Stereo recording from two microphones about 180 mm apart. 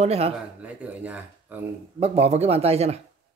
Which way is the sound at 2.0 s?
35° right (ahead or behind).